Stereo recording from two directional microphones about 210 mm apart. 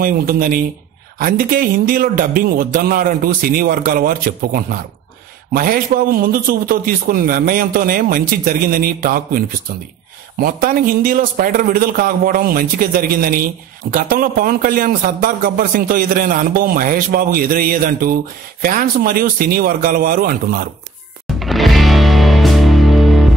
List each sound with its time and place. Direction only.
0.0 s a man's voice: 45° right (ahead or behind)
21.4 s music: centre (ahead or behind)